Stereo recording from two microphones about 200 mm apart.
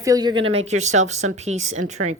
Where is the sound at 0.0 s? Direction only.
20° right (ahead or behind).